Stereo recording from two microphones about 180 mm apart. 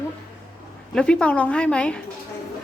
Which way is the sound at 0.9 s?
5° left (ahead or behind).